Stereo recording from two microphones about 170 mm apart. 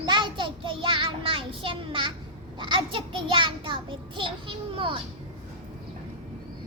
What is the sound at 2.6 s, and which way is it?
A child's voice, 30° right (ahead or behind).